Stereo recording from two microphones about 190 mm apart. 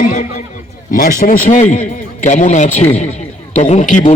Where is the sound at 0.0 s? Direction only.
40° left (ahead or behind).